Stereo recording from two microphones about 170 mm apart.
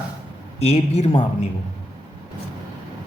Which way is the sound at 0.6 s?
40° left (ahead or behind).